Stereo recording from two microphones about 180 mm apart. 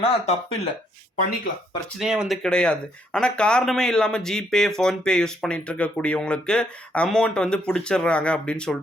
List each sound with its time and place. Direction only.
0.0 s speech: 35° left (ahead or behind)
2.0 s speech: 5° right (ahead or behind)